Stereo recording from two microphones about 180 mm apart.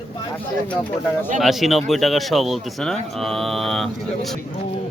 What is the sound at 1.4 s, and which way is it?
Speech, centre (ahead or behind).